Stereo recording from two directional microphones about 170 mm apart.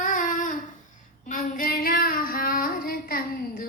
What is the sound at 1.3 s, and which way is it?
Female singing, 50° left (ahead or behind).